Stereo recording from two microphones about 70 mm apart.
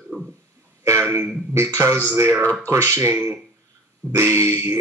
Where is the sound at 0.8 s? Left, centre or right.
Right.